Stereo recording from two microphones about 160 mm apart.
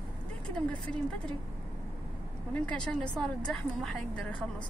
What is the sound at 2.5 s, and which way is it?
A woman's voice, 5° left (ahead or behind).